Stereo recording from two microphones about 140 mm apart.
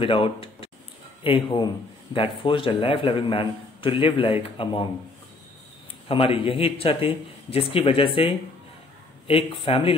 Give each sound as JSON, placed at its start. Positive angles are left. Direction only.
{"t": 0.0, "sound": "a man's voice", "side_deg": 40}
{"t": 6.0, "sound": "a man's voice", "side_deg": 40}